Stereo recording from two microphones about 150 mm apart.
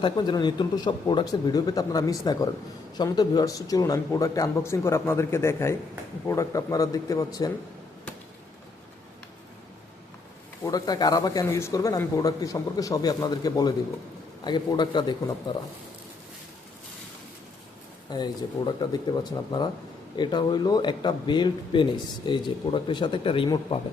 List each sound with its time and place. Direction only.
0.0 s speech: 30° left (ahead or behind)
10.6 s speech: 25° left (ahead or behind)
18.1 s speech: 30° left (ahead or behind)